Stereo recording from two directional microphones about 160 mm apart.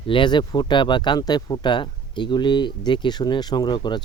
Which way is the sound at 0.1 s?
30° left (ahead or behind).